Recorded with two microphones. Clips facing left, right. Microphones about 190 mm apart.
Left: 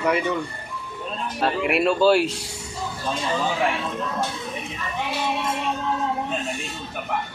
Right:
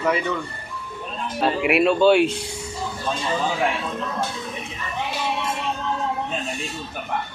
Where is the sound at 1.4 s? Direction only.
Centre (ahead or behind).